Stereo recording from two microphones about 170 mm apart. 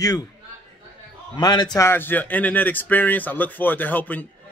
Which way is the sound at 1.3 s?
25° left (ahead or behind).